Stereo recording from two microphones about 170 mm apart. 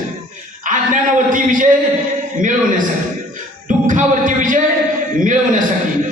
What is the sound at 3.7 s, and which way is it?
Speech, 50° right (ahead or behind).